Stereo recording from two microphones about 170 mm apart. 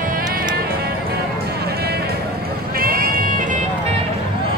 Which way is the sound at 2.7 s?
60° right (ahead or behind).